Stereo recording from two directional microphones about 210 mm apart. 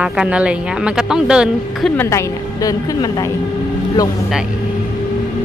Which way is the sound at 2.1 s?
15° left (ahead or behind).